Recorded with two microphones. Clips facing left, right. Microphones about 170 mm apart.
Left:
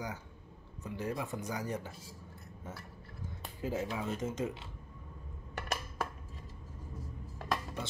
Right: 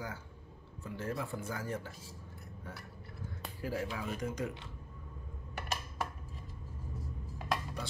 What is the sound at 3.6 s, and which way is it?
Speech, 20° left (ahead or behind).